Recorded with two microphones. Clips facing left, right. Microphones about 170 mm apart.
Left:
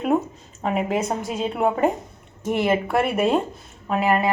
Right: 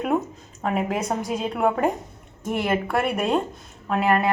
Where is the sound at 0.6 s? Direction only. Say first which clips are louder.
Left 2 dB; centre (ahead or behind).